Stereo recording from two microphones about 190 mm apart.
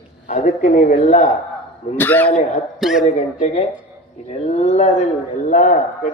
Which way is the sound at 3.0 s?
35° left (ahead or behind).